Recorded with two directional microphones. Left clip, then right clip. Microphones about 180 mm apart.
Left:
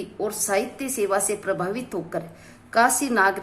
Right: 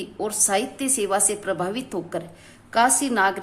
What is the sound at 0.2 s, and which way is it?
A woman's voice, 25° right (ahead or behind).